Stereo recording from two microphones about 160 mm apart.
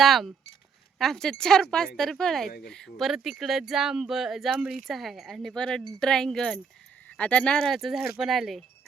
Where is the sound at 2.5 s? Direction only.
80° left.